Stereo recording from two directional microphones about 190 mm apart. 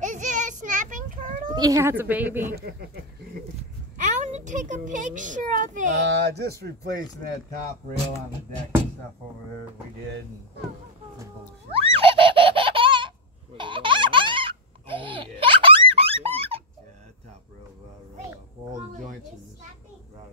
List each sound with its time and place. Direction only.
0.0 s children playing: 40° right (ahead or behind)
1.5 s a woman's voice: 20° right (ahead or behind)
2.5 s speech: 55° right (ahead or behind)
4.0 s a child's voice: 40° right (ahead or behind)
6.0 s speech: 65° right (ahead or behind)
11.7 s a sound: 30° right (ahead or behind)
13.6 s baby laughter: 25° right (ahead or behind)